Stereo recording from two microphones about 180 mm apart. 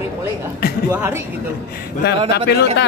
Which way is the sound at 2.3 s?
65° left (ahead or behind).